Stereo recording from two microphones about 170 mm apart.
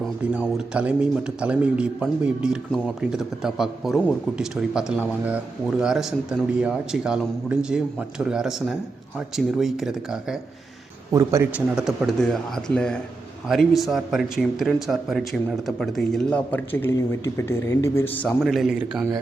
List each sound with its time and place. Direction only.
0.3 s speech: 5° right (ahead or behind)
11.1 s speech: 15° right (ahead or behind)
11.8 s a man's voice: centre (ahead or behind)
18.4 s speech: centre (ahead or behind)